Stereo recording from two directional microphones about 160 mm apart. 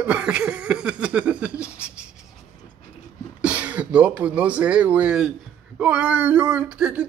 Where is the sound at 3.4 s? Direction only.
10° right (ahead or behind).